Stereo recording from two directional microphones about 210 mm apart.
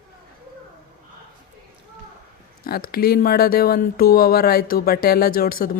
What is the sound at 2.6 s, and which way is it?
Speech, 45° left (ahead or behind).